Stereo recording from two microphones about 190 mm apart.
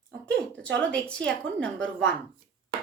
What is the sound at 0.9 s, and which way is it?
A woman's voice, 5° left (ahead or behind).